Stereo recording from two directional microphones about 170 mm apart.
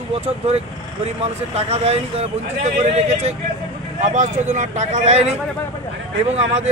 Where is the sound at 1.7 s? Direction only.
40° right (ahead or behind).